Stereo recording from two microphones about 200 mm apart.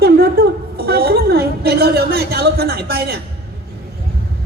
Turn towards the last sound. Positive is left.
turn(degrees=-50)  # may be behind; listen again after turning